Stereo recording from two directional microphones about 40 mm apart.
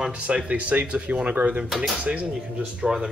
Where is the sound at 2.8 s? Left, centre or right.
Centre.